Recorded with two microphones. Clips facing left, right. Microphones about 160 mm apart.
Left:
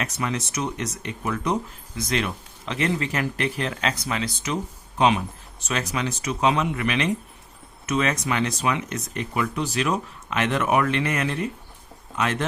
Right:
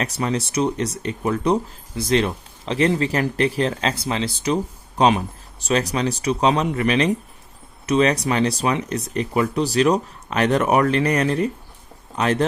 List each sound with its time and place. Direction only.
0.0 s speech: 35° right (ahead or behind)